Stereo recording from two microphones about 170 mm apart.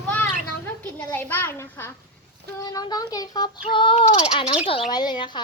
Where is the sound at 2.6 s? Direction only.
20° left (ahead or behind).